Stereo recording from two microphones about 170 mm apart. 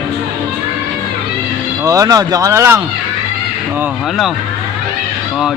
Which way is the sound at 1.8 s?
20° right (ahead or behind).